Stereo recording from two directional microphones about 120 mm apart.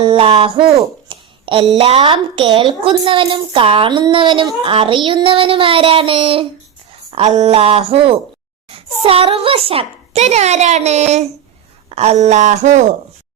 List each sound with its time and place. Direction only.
0.0 s speech: 45° right (ahead or behind)
1.0 s a sound: 45° right (ahead or behind)
1.7 s a child's voice: 60° right (ahead or behind)
2.0 s child singing: 45° right (ahead or behind)
7.4 s child singing: 50° right (ahead or behind)
8.7 s a child's voice: 50° right (ahead or behind); by 12.8 s 85° right